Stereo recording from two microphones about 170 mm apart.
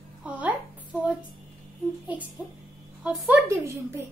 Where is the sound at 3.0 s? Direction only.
10° right (ahead or behind).